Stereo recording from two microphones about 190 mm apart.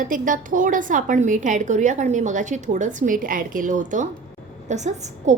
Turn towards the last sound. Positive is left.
turn(degrees=-40)  # may be behind; listen again after turning